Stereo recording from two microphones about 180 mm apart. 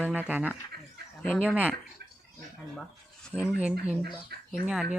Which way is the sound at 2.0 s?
60° right (ahead or behind).